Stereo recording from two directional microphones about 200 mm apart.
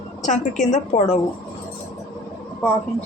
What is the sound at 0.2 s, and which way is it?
A woman's voice, 40° left (ahead or behind).